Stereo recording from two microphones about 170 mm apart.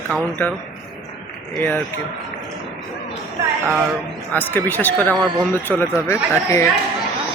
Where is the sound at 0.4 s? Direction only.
10° left (ahead or behind).